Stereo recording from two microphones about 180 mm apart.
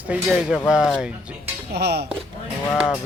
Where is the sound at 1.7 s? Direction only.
65° right (ahead or behind).